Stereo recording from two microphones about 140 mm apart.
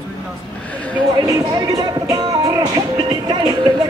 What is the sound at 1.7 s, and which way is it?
Music, 25° right (ahead or behind).